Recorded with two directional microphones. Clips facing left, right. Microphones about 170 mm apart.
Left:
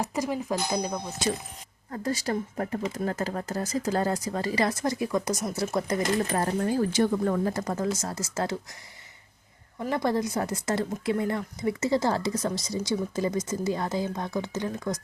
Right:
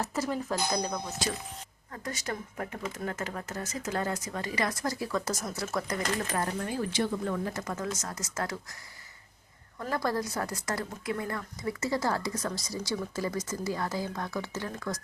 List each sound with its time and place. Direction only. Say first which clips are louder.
0.0 s speech: left 2 dB; 15° left (ahead or behind)
1.9 s speech: left 8 dB; 35° left (ahead or behind); by 5.3 s 15° left (ahead or behind)
5.3 s speech: left 5 dB; centre (ahead or behind)
5.7 s speech: left 5 dB; 25° left (ahead or behind)
9.9 s a woman's voice: left 4 dB; 20° left (ahead or behind)